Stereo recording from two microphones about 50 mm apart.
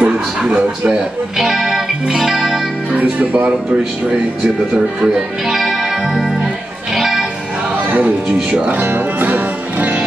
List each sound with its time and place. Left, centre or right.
0.0 s speech: right
1.4 s music: centre
2.9 s speech: right
5.5 s music: centre
8.3 s speech: centre
8.6 s music: right